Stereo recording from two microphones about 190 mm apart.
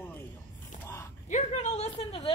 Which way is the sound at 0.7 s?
40° left (ahead or behind).